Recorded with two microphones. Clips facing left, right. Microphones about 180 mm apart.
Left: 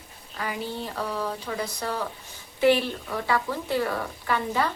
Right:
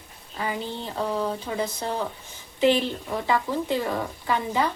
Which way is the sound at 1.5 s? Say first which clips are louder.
Right 2 dB; 25° right (ahead or behind).